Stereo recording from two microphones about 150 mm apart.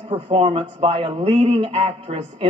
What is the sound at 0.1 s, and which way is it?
Speech, 45° right (ahead or behind).